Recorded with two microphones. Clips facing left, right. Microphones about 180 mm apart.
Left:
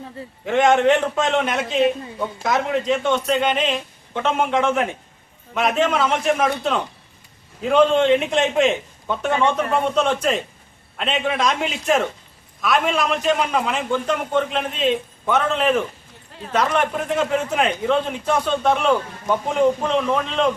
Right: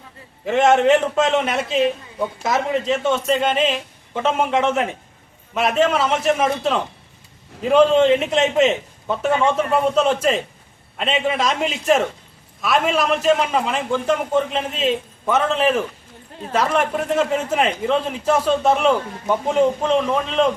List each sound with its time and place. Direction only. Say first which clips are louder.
0.4 s a man's voice: right 1 dB; 5° right (ahead or behind)